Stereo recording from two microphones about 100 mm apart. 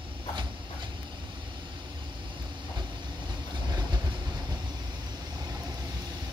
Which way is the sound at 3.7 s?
50° right (ahead or behind).